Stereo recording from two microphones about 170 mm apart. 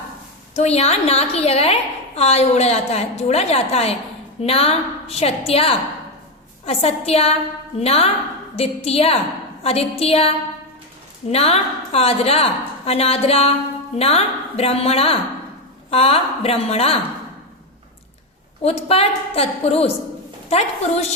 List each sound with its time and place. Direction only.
0.5 s a woman's voice: 40° left (ahead or behind)
18.6 s a woman's voice: 35° left (ahead or behind)